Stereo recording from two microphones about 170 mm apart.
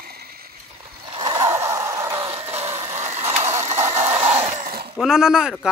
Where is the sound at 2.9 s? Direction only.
40° right (ahead or behind).